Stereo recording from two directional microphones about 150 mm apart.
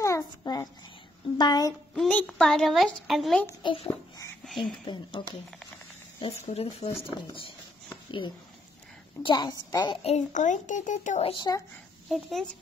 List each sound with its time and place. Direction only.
0.0 s a sound: 20° left (ahead or behind)
1.4 s a woman's voice: 30° left (ahead or behind)
2.0 s a child's voice: 10° left (ahead or behind)
3.6 s a woman's voice: 40° left (ahead or behind)
10.0 s a child's voice: 50° left (ahead or behind)
11.2 s a woman's voice: 30° left (ahead or behind)
12.1 s a child's voice: centre (ahead or behind)